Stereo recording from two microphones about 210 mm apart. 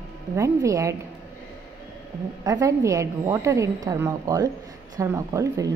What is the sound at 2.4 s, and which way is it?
A woman's voice, 15° right (ahead or behind).